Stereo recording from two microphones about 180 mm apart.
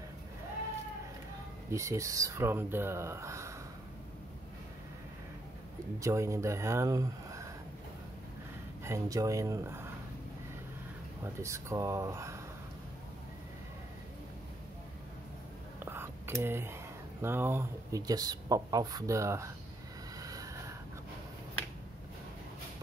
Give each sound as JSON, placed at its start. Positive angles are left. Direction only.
{"t": 1.7, "sound": "speech", "side_deg": -15}
{"t": 5.9, "sound": "speech", "side_deg": -15}
{"t": 8.8, "sound": "speech", "side_deg": -15}
{"t": 11.3, "sound": "speech", "side_deg": -15}
{"t": 15.8, "sound": "whispering", "side_deg": -15}
{"t": 17.2, "sound": "speech", "side_deg": -10}
{"t": 20.2, "sound": "a sound", "side_deg": -20}